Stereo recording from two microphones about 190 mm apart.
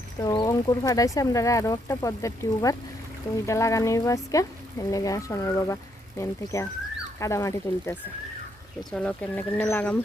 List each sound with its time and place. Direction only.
0.2 s speech: 20° left (ahead or behind)
8.8 s speech: 5° left (ahead or behind)